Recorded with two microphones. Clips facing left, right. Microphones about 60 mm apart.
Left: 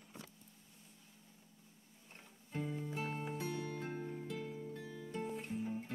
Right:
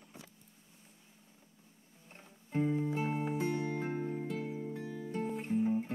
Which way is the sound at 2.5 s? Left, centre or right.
Right.